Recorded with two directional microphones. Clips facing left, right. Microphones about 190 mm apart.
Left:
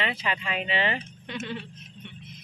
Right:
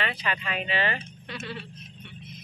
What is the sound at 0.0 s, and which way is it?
Speech, 25° left (ahead or behind).